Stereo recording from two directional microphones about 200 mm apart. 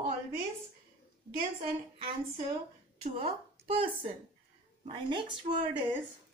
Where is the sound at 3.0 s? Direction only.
30° right (ahead or behind).